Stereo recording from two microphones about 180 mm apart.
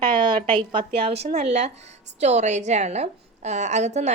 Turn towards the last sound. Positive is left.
turn(degrees=-40)  # may be behind; listen again after turning